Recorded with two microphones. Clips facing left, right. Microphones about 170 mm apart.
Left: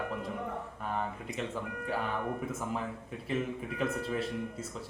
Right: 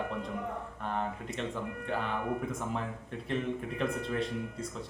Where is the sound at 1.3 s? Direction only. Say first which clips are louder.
Right 1 dB; 5° left (ahead or behind).